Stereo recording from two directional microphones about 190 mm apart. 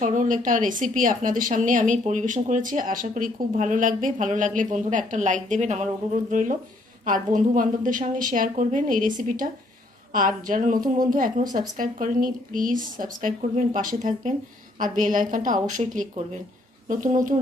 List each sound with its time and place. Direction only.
0.0 s a woman's voice: 40° right (ahead or behind)
7.1 s a woman's voice: 45° right (ahead or behind)
10.1 s a woman's voice: 45° right (ahead or behind)